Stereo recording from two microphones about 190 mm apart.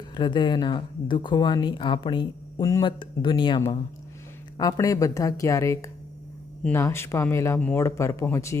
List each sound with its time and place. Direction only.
0.1 s speech: 25° left (ahead or behind)